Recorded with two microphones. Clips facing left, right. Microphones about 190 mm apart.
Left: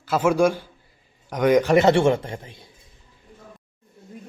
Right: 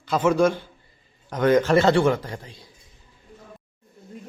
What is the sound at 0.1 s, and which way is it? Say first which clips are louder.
A man's voice: left 1 dB; 10° left (ahead or behind).